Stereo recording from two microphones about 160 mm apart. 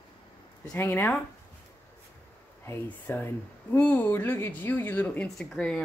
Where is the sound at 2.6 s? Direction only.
15° left (ahead or behind).